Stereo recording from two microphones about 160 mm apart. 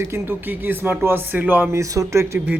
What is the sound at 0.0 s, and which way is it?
Speech, 15° right (ahead or behind).